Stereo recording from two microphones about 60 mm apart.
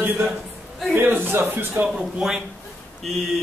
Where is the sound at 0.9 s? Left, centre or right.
Right.